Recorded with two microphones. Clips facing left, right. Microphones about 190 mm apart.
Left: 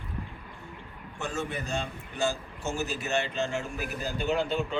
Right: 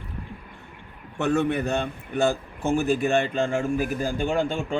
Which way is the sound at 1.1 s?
65° right (ahead or behind).